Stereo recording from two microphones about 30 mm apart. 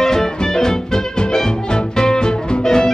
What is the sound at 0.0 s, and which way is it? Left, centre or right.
Music, centre.